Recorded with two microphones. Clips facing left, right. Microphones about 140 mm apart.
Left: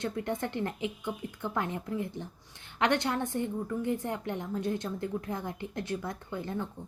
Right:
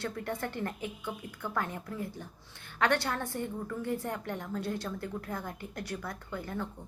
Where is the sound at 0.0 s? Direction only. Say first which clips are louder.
Left 3 dB; 20° left (ahead or behind).